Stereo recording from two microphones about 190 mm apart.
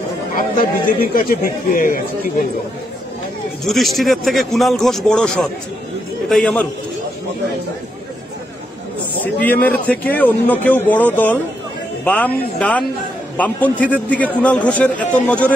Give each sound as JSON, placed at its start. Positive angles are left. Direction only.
{"t": 0.4, "sound": "a man's voice", "side_deg": 45}
{"t": 3.6, "sound": "a man's voice", "side_deg": 0}
{"t": 9.2, "sound": "a man's voice", "side_deg": 10}